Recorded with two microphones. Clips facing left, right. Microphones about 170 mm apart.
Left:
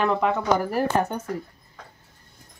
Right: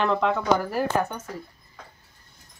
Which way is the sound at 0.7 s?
35° left (ahead or behind).